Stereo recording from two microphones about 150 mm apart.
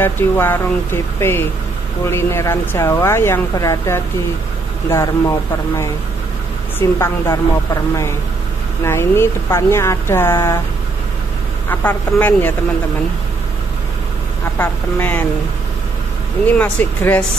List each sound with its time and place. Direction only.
0.0 s speech: 15° left (ahead or behind)
2.0 s speech: 15° left (ahead or behind)
7.0 s speech: 20° left (ahead or behind)
11.7 s speech: 10° left (ahead or behind)
14.6 s speech: 10° left (ahead or behind)
16.4 s speech: 10° left (ahead or behind)